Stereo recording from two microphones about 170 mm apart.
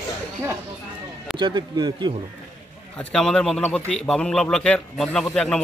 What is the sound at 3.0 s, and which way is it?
Speech, 5° left (ahead or behind).